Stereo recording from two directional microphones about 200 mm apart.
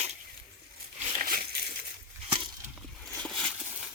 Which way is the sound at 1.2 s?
45° right (ahead or behind).